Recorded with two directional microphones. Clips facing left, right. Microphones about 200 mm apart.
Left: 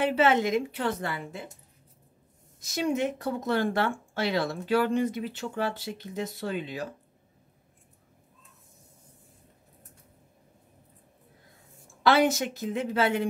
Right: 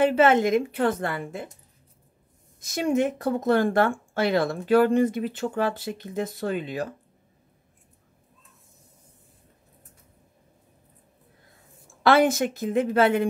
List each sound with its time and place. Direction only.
0.0 s speech: 50° right (ahead or behind)
2.6 s speech: 50° right (ahead or behind)
12.0 s speech: 50° right (ahead or behind)